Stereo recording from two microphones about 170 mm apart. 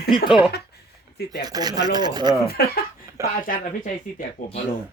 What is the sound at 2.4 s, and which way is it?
Speech, 65° left (ahead or behind).